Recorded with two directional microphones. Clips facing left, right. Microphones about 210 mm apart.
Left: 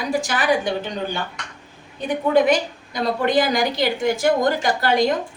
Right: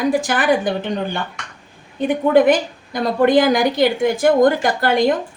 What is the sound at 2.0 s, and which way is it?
A woman's voice, 55° right (ahead or behind).